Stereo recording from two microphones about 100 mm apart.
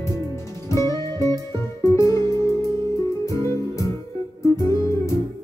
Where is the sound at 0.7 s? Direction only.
35° left (ahead or behind).